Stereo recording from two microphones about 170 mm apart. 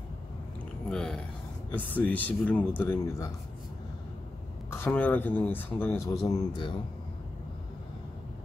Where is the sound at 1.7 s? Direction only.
10° left (ahead or behind).